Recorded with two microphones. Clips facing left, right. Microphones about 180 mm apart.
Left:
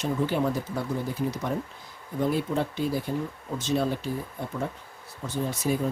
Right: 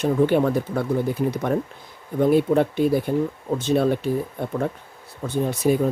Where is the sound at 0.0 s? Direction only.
60° right (ahead or behind).